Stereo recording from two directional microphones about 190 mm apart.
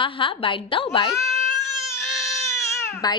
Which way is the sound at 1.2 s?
Centre (ahead or behind).